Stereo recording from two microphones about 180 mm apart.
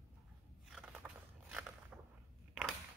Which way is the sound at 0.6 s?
Centre (ahead or behind).